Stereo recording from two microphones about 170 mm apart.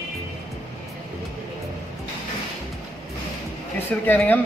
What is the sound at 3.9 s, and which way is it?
Speech, 10° left (ahead or behind).